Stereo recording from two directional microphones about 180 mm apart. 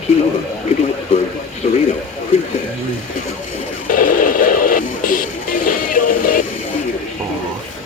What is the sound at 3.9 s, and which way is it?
Music, 50° left (ahead or behind).